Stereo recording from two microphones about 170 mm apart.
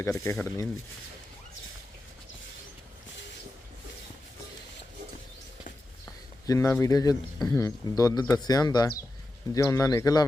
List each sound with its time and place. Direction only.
0.0 s speech: 15° left (ahead or behind)
6.4 s speech: 20° left (ahead or behind)